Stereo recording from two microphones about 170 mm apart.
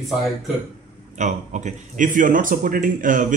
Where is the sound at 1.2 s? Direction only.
45° right (ahead or behind).